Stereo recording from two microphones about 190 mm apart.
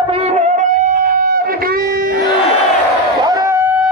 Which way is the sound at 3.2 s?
20° right (ahead or behind).